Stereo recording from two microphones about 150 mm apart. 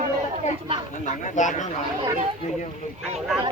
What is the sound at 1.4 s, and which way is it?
Speech, 55° left (ahead or behind).